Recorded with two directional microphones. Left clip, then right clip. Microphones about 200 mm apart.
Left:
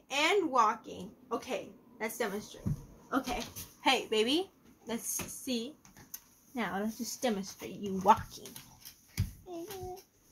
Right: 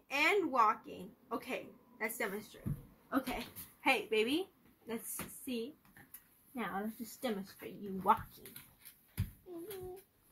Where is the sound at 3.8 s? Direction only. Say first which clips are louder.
Left 3 dB; 10° left (ahead or behind).